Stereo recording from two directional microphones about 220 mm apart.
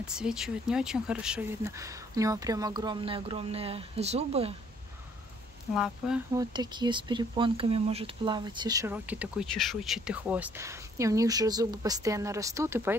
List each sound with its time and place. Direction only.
0.1 s speech: 5° right (ahead or behind); by 4.6 s 25° right (ahead or behind)
6.3 s speech: 20° right (ahead or behind)